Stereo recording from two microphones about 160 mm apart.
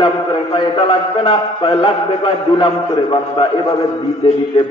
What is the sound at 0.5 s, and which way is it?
A man's voice, 30° left (ahead or behind).